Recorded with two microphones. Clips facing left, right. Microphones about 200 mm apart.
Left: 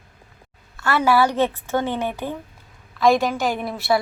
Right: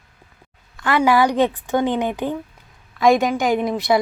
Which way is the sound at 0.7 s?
15° right (ahead or behind).